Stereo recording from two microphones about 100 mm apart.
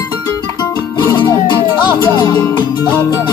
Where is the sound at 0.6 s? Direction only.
45° left (ahead or behind).